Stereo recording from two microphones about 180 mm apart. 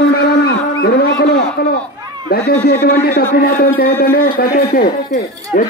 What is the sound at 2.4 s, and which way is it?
A man's voice, 60° left (ahead or behind).